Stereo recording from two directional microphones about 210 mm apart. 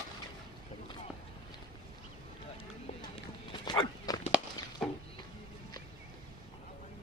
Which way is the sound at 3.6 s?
20° left (ahead or behind).